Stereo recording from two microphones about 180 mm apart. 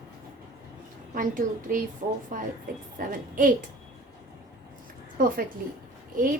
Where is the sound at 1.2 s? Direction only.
50° right (ahead or behind).